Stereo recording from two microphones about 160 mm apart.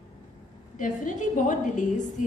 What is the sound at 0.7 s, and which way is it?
A woman's voice, 55° left (ahead or behind).